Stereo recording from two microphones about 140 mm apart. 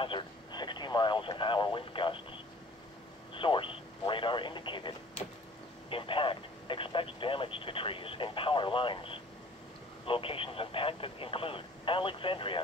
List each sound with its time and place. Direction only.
0.0 s radio: 35° left (ahead or behind)
10.0 s speech: 40° left (ahead or behind)